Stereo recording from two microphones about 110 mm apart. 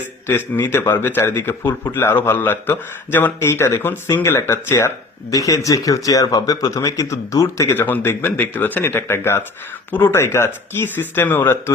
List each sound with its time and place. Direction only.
0.3 s a man's voice: 20° left (ahead or behind)
7.7 s a man's voice: 15° left (ahead or behind)